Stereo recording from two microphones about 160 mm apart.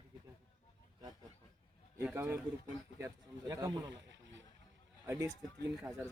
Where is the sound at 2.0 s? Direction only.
10° right (ahead or behind).